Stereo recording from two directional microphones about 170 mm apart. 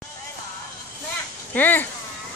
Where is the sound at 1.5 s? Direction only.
10° left (ahead or behind).